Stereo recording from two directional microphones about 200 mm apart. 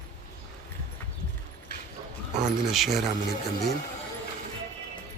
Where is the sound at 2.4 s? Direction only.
Centre (ahead or behind).